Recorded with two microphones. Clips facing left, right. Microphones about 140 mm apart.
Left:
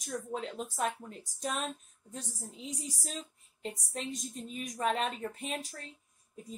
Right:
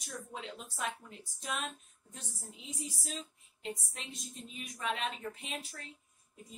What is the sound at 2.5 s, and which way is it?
A woman's voice, 40° left (ahead or behind).